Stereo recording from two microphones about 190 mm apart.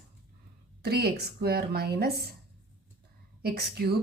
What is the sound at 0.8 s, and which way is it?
A woman's voice, 55° right (ahead or behind).